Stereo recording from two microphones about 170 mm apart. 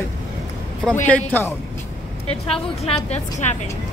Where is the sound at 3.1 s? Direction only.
45° left (ahead or behind).